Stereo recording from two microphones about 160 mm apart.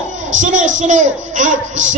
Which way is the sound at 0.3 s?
50° right (ahead or behind).